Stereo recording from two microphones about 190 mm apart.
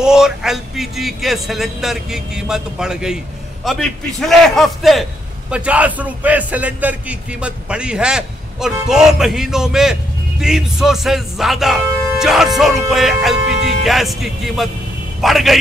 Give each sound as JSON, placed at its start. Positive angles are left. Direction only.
{"t": 0.0, "sound": "a man's voice", "side_deg": -5}